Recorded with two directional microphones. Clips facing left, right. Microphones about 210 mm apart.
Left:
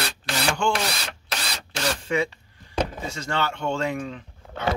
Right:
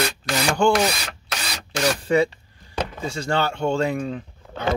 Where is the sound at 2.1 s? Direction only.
35° right (ahead or behind).